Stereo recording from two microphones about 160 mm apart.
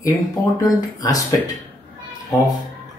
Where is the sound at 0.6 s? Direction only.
25° left (ahead or behind).